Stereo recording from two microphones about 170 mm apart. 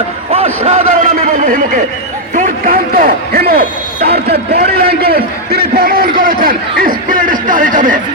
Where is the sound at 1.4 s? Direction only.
50° right (ahead or behind).